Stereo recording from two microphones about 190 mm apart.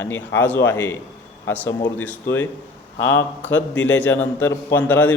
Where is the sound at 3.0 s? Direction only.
85° left.